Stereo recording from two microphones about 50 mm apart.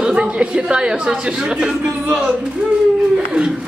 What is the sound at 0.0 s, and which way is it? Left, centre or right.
A woman's voice, centre.